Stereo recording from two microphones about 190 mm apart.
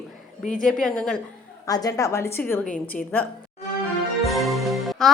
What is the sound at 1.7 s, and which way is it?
Speech, 20° left (ahead or behind).